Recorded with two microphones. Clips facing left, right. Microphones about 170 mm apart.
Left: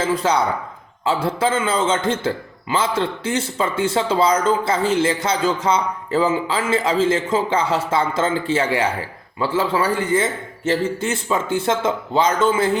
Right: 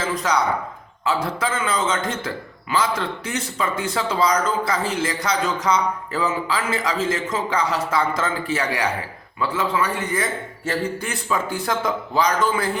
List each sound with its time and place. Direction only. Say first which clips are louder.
0.0 s a man's voice: left 3 dB; 30° left (ahead or behind)